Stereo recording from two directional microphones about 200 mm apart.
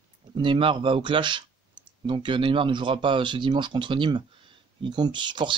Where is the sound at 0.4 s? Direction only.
25° right (ahead or behind).